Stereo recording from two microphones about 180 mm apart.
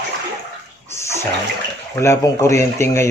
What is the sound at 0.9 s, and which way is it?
Bathtub, 15° left (ahead or behind).